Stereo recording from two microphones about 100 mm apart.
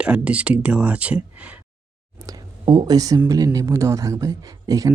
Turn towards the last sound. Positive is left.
turn(degrees=-35)  # may be behind; listen again after turning